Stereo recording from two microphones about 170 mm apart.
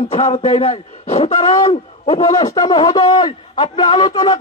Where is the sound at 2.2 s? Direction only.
20° left (ahead or behind).